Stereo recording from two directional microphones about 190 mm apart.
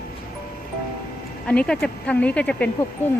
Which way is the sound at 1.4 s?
5° left (ahead or behind).